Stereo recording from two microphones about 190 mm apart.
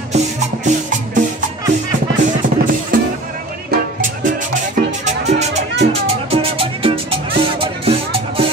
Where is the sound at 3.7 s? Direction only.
45° right (ahead or behind).